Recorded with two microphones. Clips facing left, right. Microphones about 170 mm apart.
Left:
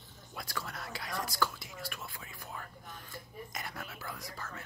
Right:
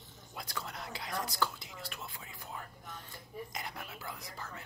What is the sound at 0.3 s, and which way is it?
Speech, 20° right (ahead or behind).